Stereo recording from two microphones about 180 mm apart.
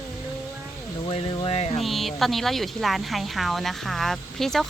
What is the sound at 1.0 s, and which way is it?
Speech, 30° left (ahead or behind).